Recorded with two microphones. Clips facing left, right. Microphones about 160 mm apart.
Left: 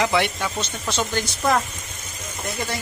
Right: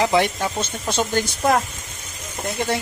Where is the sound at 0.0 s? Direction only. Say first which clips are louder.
Right 3 dB; 35° right (ahead or behind).